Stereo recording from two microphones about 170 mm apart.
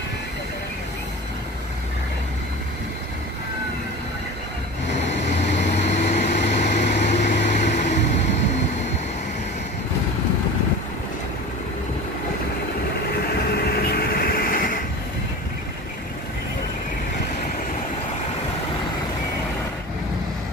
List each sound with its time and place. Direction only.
5.3 s vehicle: 40° left (ahead or behind)
6.7 s a sound: 40° left (ahead or behind)
13.3 s vehicle: 70° left (ahead or behind)